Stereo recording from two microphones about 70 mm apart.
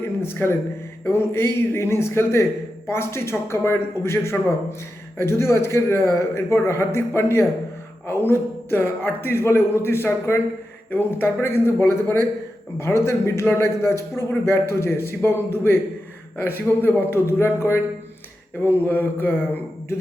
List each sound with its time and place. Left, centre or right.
0.0 s a man's voice: left
16.8 s a man's voice: left
18.6 s a sound: left